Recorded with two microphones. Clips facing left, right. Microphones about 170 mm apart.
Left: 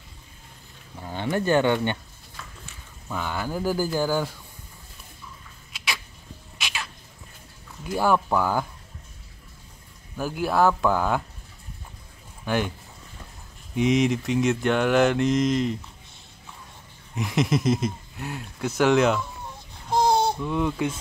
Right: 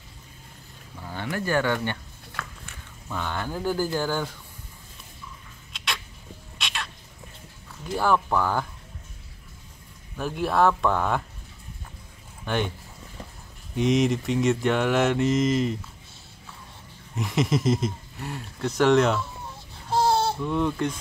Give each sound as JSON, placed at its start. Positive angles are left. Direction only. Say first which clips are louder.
{"t": 0.9, "sound": "speech", "louder": "left 4 dB", "side_deg": 20}
{"t": 2.4, "sound": "a sound", "louder": "right 6 dB", "side_deg": -75}
{"t": 3.1, "sound": "speech", "louder": "left 1 dB", "side_deg": 5}
{"t": 6.6, "sound": "bird", "louder": "even", "side_deg": 5}
{"t": 7.8, "sound": "speech", "louder": "left 1 dB", "side_deg": 10}
{"t": 10.1, "sound": "speech", "louder": "left 1 dB", "side_deg": 5}
{"t": 12.4, "sound": "speech", "louder": "left 2 dB", "side_deg": 5}
{"t": 13.7, "sound": "speech", "louder": "left 1 dB", "side_deg": 0}
{"t": 17.1, "sound": "speech", "louder": "left 1 dB", "side_deg": 0}
{"t": 19.9, "sound": "a sound", "louder": "left 1 dB", "side_deg": 15}
{"t": 20.3, "sound": "speech", "louder": "even", "side_deg": 5}